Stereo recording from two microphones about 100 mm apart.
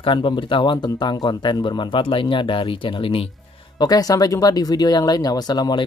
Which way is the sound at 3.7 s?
40° left (ahead or behind).